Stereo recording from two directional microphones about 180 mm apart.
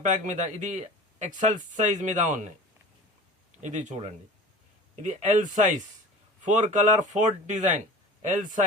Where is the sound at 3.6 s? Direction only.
40° right (ahead or behind).